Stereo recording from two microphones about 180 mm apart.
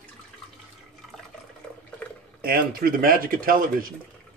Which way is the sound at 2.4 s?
55° right (ahead or behind).